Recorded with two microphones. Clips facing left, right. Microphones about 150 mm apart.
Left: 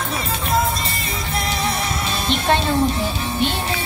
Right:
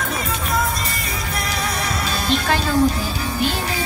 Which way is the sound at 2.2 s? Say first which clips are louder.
Left 2 dB; 25° left (ahead or behind).